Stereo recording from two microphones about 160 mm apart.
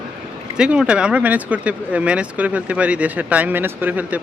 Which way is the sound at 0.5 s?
5° right (ahead or behind).